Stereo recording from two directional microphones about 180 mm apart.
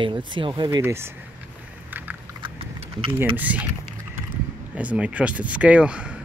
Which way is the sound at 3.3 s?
10° right (ahead or behind).